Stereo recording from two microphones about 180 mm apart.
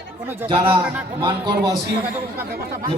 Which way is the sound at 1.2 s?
25° right (ahead or behind).